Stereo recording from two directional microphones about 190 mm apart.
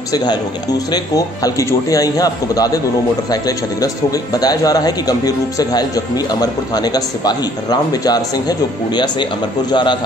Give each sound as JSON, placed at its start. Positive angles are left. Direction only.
{"t": 0.1, "sound": "speech", "side_deg": 20}